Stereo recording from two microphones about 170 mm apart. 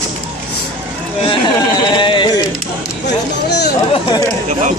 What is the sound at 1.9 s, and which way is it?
Sheep, 30° left (ahead or behind).